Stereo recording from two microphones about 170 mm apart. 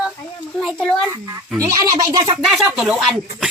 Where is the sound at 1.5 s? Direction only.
15° right (ahead or behind).